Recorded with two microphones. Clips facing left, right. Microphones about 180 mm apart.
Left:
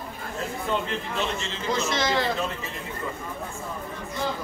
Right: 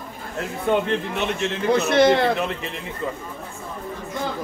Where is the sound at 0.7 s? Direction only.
65° right (ahead or behind).